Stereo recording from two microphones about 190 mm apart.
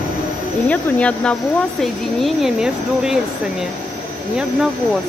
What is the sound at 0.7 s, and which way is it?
Speech, 5° left (ahead or behind).